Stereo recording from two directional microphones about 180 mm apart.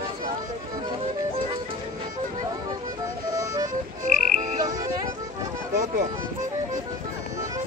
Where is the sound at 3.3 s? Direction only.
20° right (ahead or behind).